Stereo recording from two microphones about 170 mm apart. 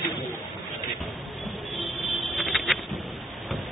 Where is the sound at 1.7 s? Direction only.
Centre (ahead or behind).